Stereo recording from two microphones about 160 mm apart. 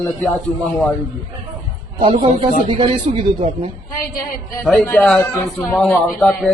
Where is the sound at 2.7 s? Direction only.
30° right (ahead or behind).